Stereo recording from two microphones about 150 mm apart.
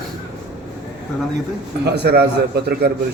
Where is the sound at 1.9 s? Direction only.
90° right.